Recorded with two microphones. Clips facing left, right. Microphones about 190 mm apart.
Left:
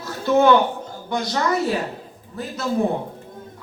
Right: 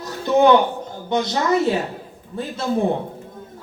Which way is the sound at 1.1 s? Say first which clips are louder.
Right 3 dB; 20° right (ahead or behind).